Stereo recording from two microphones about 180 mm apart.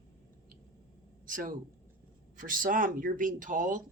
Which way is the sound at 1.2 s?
50° right (ahead or behind).